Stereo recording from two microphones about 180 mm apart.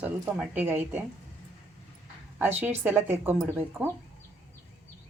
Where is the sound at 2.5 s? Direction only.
10° right (ahead or behind).